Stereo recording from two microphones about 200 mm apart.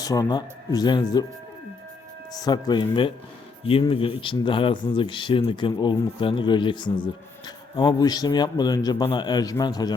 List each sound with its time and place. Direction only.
0.0 s speech: 20° left (ahead or behind)
2.4 s speech: 20° left (ahead or behind)